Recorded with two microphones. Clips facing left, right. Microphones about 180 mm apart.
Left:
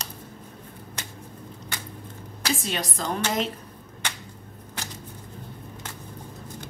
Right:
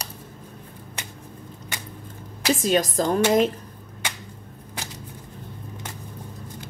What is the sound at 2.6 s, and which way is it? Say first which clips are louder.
Speech: right 9 dB; 45° right (ahead or behind).